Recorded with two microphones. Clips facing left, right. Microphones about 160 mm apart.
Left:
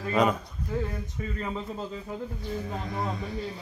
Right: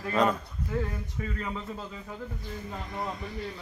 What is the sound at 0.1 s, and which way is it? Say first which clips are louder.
Speech: left 1 dB; 10° left (ahead or behind).